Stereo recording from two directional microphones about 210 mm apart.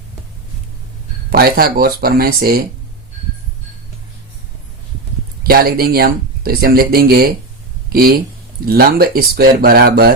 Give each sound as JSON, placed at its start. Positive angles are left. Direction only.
{"t": 1.3, "sound": "speech", "side_deg": -45}
{"t": 5.4, "sound": "speech", "side_deg": -45}